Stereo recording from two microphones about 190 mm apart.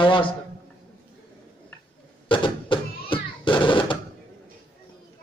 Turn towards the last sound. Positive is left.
turn(degrees=25)  # may be behind; listen again after turning